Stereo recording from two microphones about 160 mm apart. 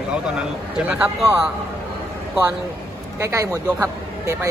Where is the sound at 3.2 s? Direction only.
20° right (ahead or behind).